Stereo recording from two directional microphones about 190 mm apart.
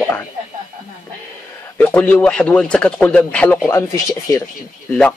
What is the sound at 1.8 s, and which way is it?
Speech, 10° left (ahead or behind).